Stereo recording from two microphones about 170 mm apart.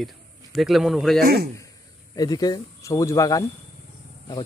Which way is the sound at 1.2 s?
65° right (ahead or behind).